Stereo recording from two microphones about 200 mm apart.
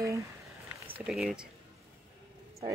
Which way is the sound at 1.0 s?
Centre (ahead or behind).